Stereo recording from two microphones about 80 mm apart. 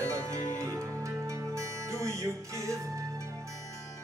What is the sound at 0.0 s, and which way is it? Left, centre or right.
Music, right.